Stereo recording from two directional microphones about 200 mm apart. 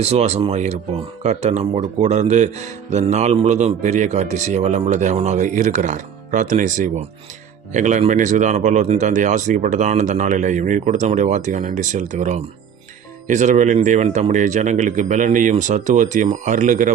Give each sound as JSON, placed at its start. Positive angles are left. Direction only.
{"t": 0.0, "sound": "speech", "side_deg": -30}